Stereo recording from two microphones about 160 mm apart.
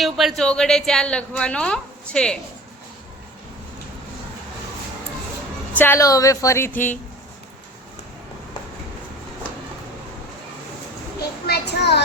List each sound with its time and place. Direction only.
0.0 s speech: centre (ahead or behind)
5.7 s a woman's voice: 15° left (ahead or behind)
11.4 s a child's voice: 85° left